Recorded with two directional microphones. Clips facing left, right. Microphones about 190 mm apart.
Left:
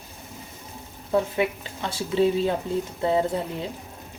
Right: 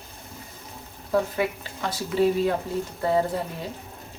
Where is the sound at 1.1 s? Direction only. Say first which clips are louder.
Left 1 dB; 25° left (ahead or behind).